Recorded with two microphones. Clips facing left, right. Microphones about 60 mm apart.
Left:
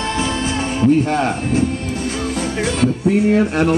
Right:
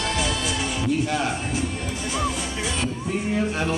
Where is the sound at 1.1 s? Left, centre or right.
Left.